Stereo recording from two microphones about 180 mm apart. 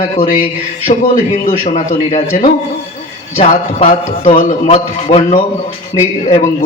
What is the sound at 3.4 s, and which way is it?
A man's voice, 35° left (ahead or behind).